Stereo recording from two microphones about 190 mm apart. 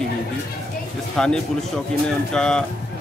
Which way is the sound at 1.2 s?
5° left (ahead or behind).